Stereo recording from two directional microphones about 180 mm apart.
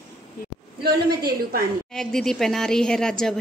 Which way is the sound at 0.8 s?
60° right (ahead or behind).